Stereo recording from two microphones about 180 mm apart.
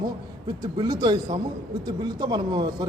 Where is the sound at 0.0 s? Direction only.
25° right (ahead or behind).